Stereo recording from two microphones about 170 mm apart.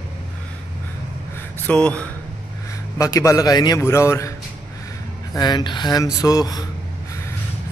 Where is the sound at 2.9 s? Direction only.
20° left (ahead or behind).